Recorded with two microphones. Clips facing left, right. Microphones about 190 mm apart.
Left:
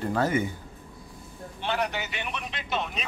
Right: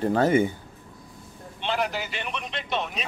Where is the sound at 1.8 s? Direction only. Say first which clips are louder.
Right 2 dB; centre (ahead or behind).